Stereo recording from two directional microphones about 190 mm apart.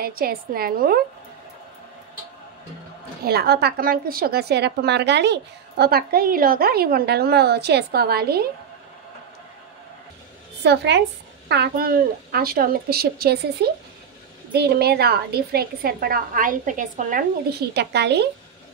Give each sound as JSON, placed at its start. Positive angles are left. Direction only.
{"t": 0.0, "sound": "a woman's voice", "side_deg": -50}
{"t": 3.3, "sound": "a woman's voice", "side_deg": -55}
{"t": 10.6, "sound": "a woman's voice", "side_deg": -65}